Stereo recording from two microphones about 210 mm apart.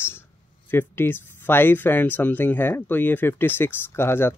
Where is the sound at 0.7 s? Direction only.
10° left (ahead or behind).